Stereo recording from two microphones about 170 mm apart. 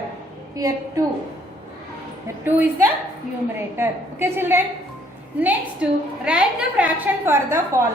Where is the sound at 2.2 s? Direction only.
15° right (ahead or behind).